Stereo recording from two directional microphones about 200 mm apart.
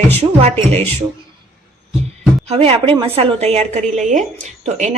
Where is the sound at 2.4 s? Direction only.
30° right (ahead or behind).